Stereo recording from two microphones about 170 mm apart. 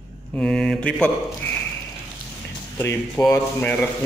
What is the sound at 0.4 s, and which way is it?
Mantra, centre (ahead or behind).